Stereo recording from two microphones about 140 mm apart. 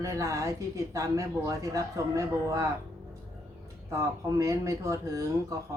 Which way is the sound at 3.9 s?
20° right (ahead or behind).